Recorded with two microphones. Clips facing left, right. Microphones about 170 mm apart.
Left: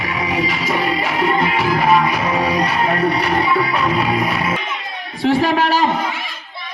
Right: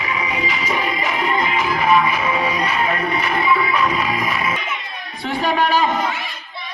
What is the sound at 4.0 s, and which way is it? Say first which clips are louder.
Music: left 4 dB; 65° left (ahead or behind).